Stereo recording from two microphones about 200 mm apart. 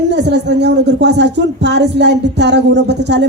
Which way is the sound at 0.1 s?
60° right (ahead or behind).